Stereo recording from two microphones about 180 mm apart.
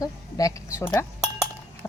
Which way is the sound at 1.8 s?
15° left (ahead or behind).